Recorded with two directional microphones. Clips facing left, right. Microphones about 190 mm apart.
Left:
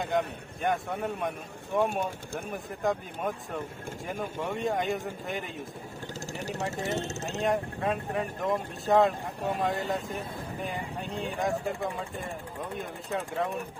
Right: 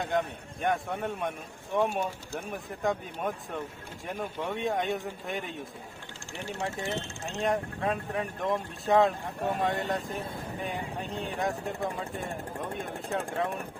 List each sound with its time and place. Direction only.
0.0 s speech: centre (ahead or behind)
6.3 s speech: 40° left (ahead or behind)
7.4 s speech: centre (ahead or behind)